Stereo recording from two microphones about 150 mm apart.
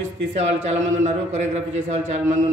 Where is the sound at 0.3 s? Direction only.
45° right (ahead or behind).